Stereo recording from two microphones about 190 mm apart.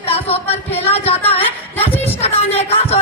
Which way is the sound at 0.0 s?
30° left (ahead or behind).